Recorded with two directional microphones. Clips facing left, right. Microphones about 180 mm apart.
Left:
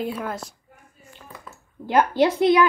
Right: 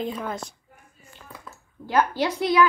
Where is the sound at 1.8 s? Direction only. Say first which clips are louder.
Left 4 dB; 20° left (ahead or behind).